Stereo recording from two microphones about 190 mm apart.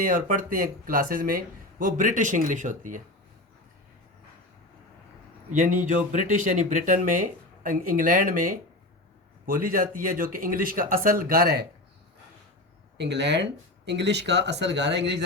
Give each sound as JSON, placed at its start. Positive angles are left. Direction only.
{"t": 0.0, "sound": "speech", "side_deg": -45}
{"t": 5.5, "sound": "speech", "side_deg": -45}
{"t": 13.0, "sound": "speech", "side_deg": -65}